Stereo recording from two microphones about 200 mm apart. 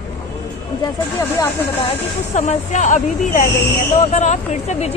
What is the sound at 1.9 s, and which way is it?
Speech, 35° left (ahead or behind).